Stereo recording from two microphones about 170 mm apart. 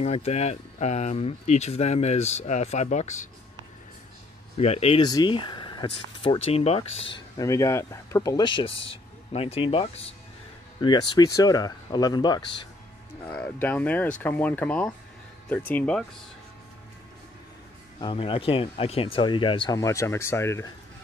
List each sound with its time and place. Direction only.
0.0 s speech: 40° left (ahead or behind)
4.6 s speech: 35° left (ahead or behind)
5.0 s speech: 25° left (ahead or behind)
7.3 s speech: 20° left (ahead or behind)
13.2 s speech: 5° left (ahead or behind)
18.0 s speech: 30° left (ahead or behind); by 20.6 s 15° left (ahead or behind)